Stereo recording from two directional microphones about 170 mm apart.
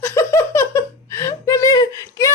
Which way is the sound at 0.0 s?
15° left (ahead or behind).